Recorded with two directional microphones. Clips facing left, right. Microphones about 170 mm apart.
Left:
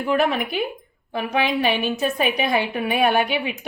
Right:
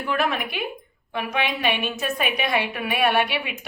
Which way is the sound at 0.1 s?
30° left (ahead or behind).